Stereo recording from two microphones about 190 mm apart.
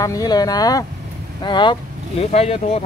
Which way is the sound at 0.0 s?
20° left (ahead or behind).